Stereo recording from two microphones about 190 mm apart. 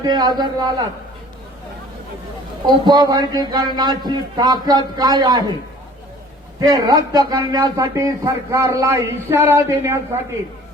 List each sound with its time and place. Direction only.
0.0 s a man's voice: 20° right (ahead or behind)
2.6 s a man's voice: 20° right (ahead or behind)
6.6 s speech: 20° right (ahead or behind)